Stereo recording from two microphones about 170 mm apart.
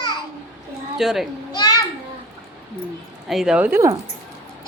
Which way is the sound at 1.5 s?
25° left (ahead or behind).